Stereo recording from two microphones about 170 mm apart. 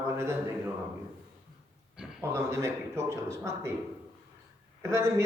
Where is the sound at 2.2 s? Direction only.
15° right (ahead or behind).